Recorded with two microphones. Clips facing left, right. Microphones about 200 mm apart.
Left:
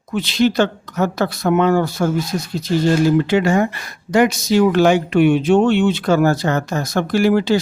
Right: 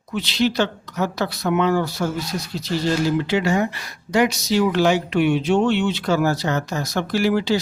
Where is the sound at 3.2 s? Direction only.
50° left (ahead or behind).